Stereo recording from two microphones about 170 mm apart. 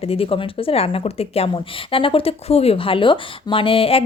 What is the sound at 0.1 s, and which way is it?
Speech, 35° left (ahead or behind).